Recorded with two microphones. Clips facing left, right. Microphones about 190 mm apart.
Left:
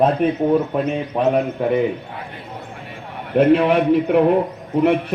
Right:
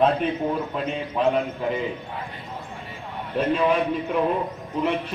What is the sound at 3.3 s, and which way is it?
A man's voice, 65° left (ahead or behind).